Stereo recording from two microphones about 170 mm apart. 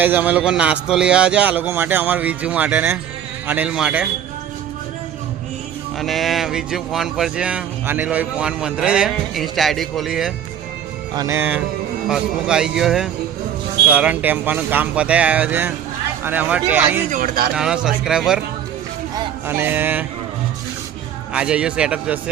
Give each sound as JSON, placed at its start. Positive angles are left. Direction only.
{"t": 0.0, "sound": "a man's voice", "side_deg": -10}
{"t": 6.0, "sound": "speech", "side_deg": 0}
{"t": 11.1, "sound": "a man's voice", "side_deg": -20}
{"t": 17.1, "sound": "a man's voice", "side_deg": -55}
{"t": 17.5, "sound": "speech", "side_deg": -5}
{"t": 19.5, "sound": "a man's voice", "side_deg": -10}
{"t": 21.3, "sound": "speech", "side_deg": -5}